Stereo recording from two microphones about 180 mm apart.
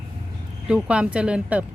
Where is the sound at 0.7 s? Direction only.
5° right (ahead or behind).